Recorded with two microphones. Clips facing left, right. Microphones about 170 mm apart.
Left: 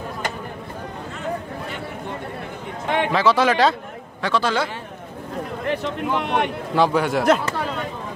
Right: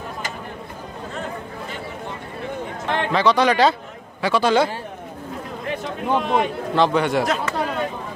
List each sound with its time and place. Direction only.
2.9 s speech: 5° left (ahead or behind)
4.2 s a man's voice: 15° right (ahead or behind)
5.8 s speech: 65° left (ahead or behind)
6.7 s speech: 5° left (ahead or behind)